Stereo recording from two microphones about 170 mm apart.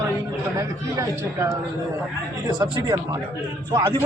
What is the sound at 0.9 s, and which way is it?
Speech, 15° right (ahead or behind).